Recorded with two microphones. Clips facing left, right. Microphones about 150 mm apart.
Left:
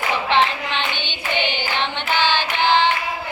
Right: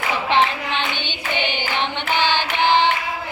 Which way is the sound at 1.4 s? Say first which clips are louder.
Even; 15° right (ahead or behind).